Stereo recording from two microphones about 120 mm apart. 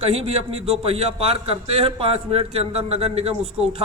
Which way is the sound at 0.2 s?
60° right (ahead or behind).